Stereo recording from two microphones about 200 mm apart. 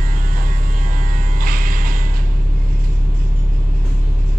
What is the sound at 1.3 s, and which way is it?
Electric shaver, 45° right (ahead or behind).